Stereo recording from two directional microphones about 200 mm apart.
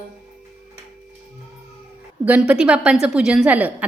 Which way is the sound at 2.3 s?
5° right (ahead or behind).